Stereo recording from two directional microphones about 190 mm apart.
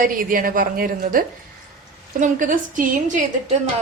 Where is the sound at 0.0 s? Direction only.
45° right (ahead or behind).